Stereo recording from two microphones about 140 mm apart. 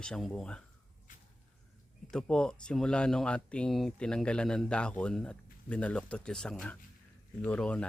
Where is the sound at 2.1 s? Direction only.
5° left (ahead or behind).